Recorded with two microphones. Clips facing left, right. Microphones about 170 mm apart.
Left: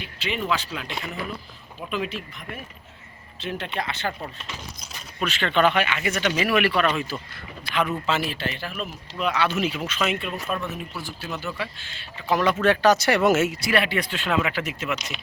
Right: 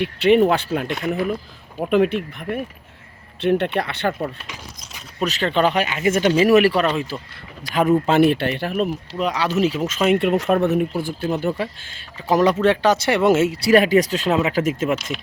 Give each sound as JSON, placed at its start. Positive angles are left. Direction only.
{"t": 0.0, "sound": "speech", "side_deg": -60}
{"t": 1.8, "sound": "speech", "side_deg": -60}
{"t": 5.2, "sound": "speech", "side_deg": -35}
{"t": 6.8, "sound": "speech", "side_deg": -25}
{"t": 7.6, "sound": "speech", "side_deg": -45}
{"t": 9.1, "sound": "speech", "side_deg": -35}
{"t": 10.2, "sound": "speech", "side_deg": -80}
{"t": 12.6, "sound": "speech", "side_deg": -25}